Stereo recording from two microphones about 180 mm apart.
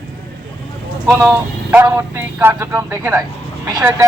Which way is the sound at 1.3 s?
10° right (ahead or behind).